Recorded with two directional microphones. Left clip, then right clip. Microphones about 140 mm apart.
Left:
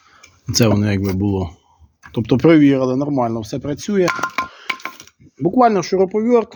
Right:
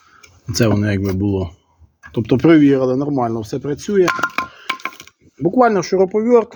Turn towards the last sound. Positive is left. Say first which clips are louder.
# right 2 dB
turn(degrees=10)  # may be behind; listen again after turning